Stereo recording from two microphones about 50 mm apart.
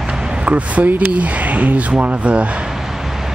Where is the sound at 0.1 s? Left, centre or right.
Centre.